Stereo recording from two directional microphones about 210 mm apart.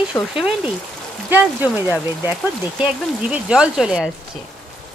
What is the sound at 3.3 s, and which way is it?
Speech, 5° right (ahead or behind).